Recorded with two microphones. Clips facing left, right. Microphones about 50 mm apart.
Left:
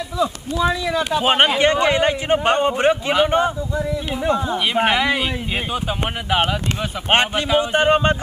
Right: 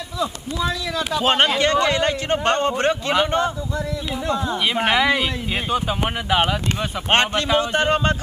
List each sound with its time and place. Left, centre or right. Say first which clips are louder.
0.2 s speech: left 4 dB; centre
4.8 s speech: even; centre; by 8.2 s left